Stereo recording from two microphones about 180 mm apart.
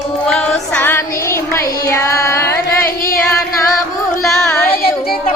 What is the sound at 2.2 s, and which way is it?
Carnatic music, 15° left (ahead or behind).